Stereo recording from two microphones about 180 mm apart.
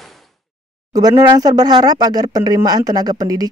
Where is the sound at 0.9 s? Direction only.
20° right (ahead or behind).